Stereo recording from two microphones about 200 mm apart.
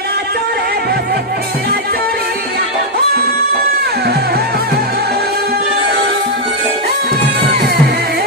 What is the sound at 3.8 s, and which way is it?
Music, 50° right (ahead or behind).